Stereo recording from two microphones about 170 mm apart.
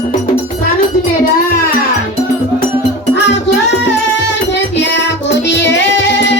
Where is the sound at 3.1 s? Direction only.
90° left.